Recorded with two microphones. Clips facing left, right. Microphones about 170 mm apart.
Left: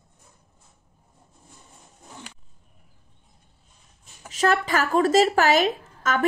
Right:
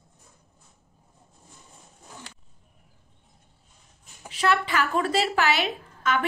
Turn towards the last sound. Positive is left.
turn(degrees=40)  # may be behind; listen again after turning